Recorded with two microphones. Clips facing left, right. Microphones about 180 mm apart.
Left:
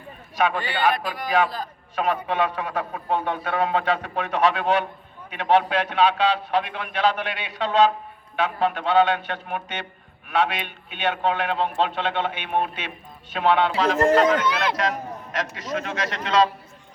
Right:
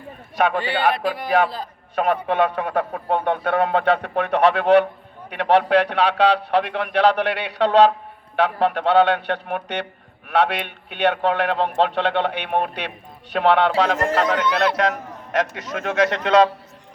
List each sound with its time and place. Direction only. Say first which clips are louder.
0.3 s a man's voice: right 3 dB; 60° right (ahead or behind)
2.0 s a man's voice: right 4 dB; 55° right (ahead or behind)